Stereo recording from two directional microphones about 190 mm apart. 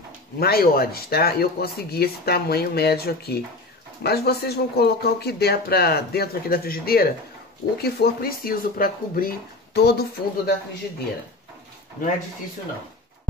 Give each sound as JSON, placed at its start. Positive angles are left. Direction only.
{"t": 0.4, "sound": "speech", "side_deg": 55}